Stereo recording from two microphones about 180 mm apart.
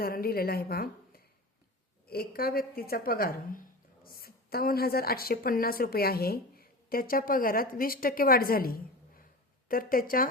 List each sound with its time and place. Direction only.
0.0 s a woman's voice: 55° left (ahead or behind)